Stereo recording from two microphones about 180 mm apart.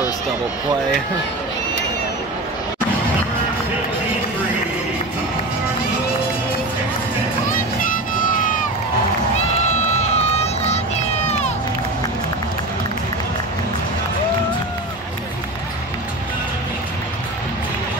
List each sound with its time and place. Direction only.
8.4 s a sound: 45° left (ahead or behind)
9.6 s music: 40° left (ahead or behind)
11.2 s crowd: 40° left (ahead or behind)